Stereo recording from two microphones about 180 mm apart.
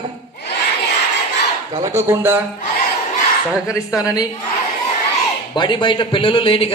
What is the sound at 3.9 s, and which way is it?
Speech, 20° left (ahead or behind).